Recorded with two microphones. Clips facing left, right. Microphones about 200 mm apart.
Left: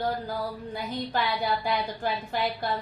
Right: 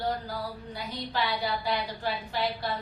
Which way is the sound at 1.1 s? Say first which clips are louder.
Left 1 dB; 50° left (ahead or behind).